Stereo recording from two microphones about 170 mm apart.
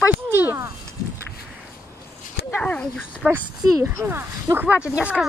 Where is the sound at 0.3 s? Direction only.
15° right (ahead or behind).